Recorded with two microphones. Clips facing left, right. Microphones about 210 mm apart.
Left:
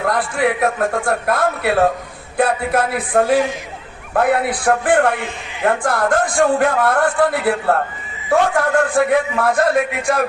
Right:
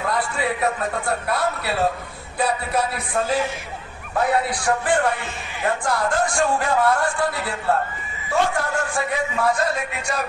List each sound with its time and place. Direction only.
0.0 s a man's voice: 60° left (ahead or behind)